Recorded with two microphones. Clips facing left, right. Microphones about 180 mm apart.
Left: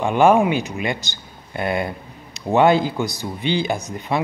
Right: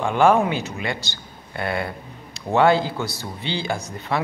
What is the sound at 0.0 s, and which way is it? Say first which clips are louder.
Speech: left 2 dB; 15° left (ahead or behind).